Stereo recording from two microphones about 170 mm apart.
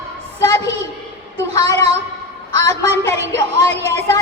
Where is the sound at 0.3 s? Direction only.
20° left (ahead or behind).